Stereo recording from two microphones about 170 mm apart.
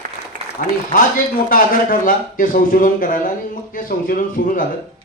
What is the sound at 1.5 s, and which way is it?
A man's voice, 55° left (ahead or behind).